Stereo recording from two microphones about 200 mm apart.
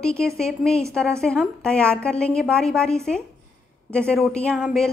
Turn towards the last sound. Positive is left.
turn(degrees=0)  # may be behind; listen again after turning